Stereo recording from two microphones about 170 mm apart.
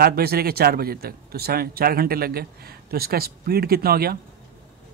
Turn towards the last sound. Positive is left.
turn(degrees=-65)  # may be behind; listen again after turning